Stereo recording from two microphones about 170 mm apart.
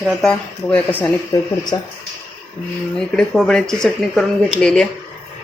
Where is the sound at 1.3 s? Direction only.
20° left (ahead or behind).